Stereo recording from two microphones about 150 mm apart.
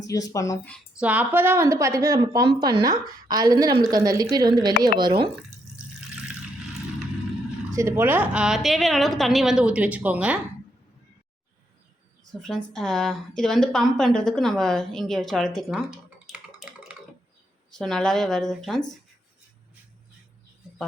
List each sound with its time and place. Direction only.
0.1 s speech: 25° left (ahead or behind)
0.9 s a woman's voice: 10° right (ahead or behind); by 5.3 s 30° right (ahead or behind)
7.7 s a woman's voice: 20° right (ahead or behind)
12.3 s a woman's voice: 5° left (ahead or behind)
15.7 s typing: 5° right (ahead or behind)
17.7 s a woman's voice: 5° left (ahead or behind)